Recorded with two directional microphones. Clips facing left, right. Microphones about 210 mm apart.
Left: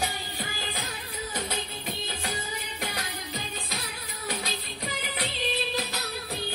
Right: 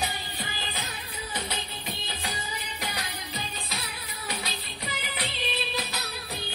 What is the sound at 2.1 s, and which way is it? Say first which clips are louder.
Music: left 2 dB; 50° left (ahead or behind).